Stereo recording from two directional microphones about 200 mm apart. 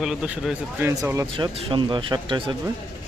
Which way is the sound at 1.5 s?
25° right (ahead or behind).